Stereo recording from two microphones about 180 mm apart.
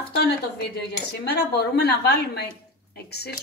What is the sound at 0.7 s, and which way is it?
Speech, 65° left (ahead or behind).